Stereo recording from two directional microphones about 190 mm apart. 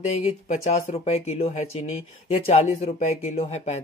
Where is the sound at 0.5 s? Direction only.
40° left (ahead or behind).